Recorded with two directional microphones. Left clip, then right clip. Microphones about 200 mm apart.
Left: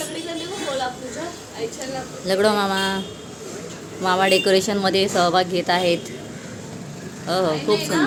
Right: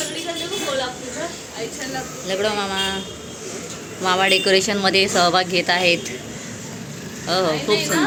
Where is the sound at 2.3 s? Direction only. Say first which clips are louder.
Left 4 dB; 30° left (ahead or behind).